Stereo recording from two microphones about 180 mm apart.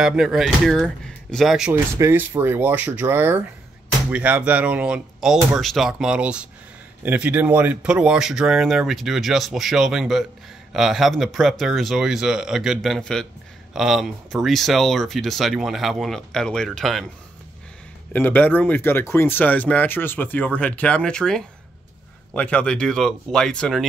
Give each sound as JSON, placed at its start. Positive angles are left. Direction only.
{"t": 0.0, "sound": "speech", "side_deg": -5}
{"t": 18.1, "sound": "speech", "side_deg": 10}